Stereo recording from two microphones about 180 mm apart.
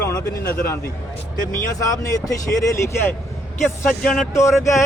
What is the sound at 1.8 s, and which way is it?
Speech, 20° left (ahead or behind).